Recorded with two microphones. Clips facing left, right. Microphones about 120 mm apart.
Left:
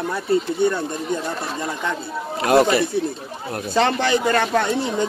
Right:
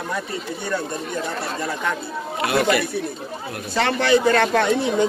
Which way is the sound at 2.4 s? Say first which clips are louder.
Left 6 dB; 40° left (ahead or behind).